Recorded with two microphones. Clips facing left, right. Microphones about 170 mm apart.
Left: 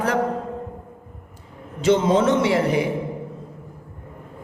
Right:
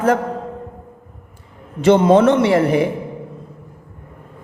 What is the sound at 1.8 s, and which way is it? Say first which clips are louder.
A man's voice: right 6 dB; 60° right (ahead or behind).